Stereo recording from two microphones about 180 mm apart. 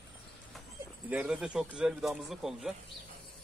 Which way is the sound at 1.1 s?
5° right (ahead or behind).